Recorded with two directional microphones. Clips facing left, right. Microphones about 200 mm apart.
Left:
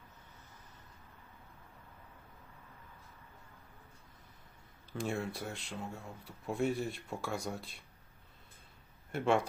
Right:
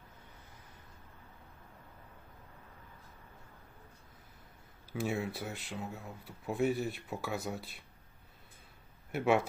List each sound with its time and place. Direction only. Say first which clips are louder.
4.9 s speech: right 2 dB; 5° right (ahead or behind)
9.1 s speech: right 1 dB; 5° right (ahead or behind)